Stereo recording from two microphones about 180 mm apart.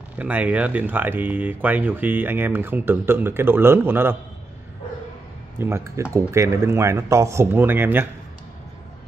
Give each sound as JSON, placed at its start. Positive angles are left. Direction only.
{"t": 0.2, "sound": "speech", "side_deg": -10}
{"t": 5.6, "sound": "speech", "side_deg": -15}